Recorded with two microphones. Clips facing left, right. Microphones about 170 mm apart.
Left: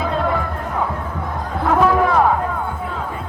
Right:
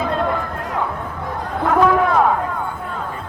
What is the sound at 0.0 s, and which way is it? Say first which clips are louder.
Music: even; centre (ahead or behind).